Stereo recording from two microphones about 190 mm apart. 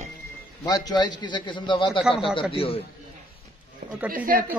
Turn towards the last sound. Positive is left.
turn(degrees=-50)  # may be behind; listen again after turning